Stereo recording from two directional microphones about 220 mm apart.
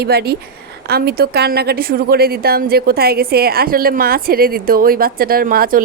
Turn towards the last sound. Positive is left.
turn(degrees=-40)  # may be behind; listen again after turning